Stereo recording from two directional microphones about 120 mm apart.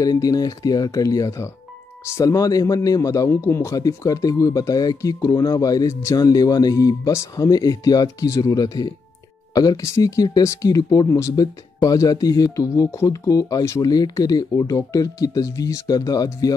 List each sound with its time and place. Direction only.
0.0 s speech: 30° left (ahead or behind)